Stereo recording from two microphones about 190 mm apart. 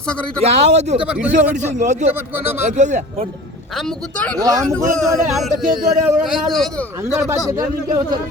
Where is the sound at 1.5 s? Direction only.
40° right (ahead or behind).